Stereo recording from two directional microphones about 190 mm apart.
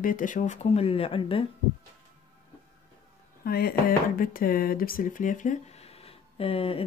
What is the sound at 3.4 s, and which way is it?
Speech, 55° left (ahead or behind).